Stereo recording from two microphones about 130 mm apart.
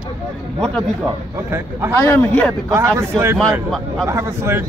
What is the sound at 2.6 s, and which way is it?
Speech, 20° right (ahead or behind).